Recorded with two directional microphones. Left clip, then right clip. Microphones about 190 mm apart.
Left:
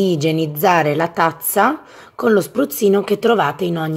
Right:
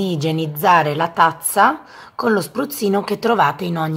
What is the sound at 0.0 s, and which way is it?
A woman's voice, 25° left (ahead or behind).